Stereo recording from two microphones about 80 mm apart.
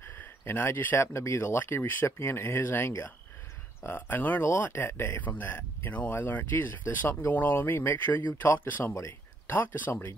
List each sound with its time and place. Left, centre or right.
0.0 s speech: left